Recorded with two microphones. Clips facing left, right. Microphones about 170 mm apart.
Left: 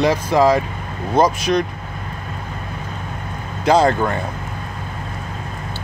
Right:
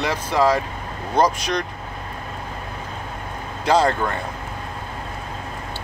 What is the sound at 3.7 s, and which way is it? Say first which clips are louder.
Speech: left 3 dB; 10° left (ahead or behind).